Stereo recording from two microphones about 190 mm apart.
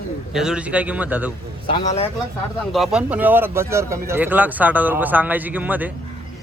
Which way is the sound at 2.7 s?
Centre (ahead or behind).